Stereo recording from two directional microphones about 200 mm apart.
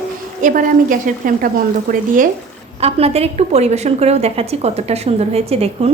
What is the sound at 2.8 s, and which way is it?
A woman's voice, 30° right (ahead or behind).